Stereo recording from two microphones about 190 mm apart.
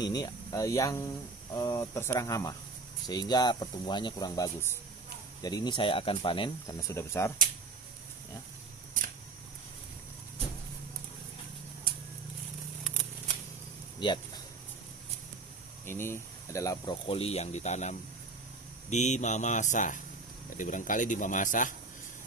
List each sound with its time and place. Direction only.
0.0 s speech: 20° left (ahead or behind)
13.9 s a sound: 25° left (ahead or behind)
15.8 s speech: 10° left (ahead or behind); by 21.7 s 45° left (ahead or behind)